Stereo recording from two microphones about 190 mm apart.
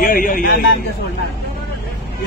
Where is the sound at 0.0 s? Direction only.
45° left (ahead or behind).